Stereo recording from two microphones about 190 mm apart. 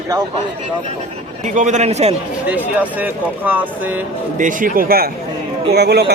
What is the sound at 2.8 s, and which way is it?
Speech, 10° right (ahead or behind).